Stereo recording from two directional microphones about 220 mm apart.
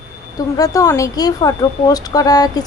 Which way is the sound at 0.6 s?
15° left (ahead or behind).